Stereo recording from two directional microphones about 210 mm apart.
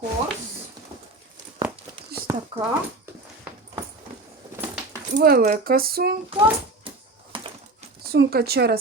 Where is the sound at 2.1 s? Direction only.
50° right (ahead or behind).